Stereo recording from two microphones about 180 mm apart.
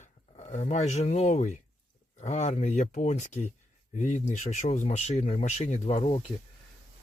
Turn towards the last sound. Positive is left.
turn(degrees=30)  # may be behind; listen again after turning